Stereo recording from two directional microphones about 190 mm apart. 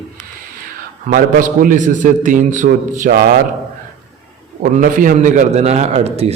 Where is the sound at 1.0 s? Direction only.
45° right (ahead or behind).